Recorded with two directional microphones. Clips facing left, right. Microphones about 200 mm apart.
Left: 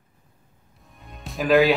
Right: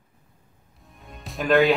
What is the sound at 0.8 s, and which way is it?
Music, centre (ahead or behind).